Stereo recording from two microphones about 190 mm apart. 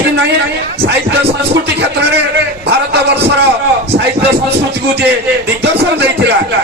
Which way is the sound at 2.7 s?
60° right (ahead or behind).